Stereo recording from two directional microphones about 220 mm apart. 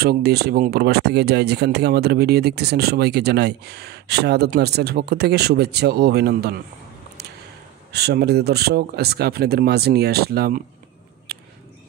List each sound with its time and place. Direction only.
0.0 s speech: 45° right (ahead or behind)
7.9 s speech: 45° right (ahead or behind)
11.3 s a sound: 45° right (ahead or behind)